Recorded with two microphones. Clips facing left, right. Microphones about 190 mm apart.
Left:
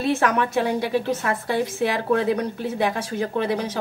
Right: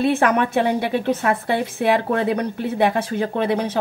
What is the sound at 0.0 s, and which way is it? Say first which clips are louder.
A woman's voice: right 3 dB; 60° right (ahead or behind).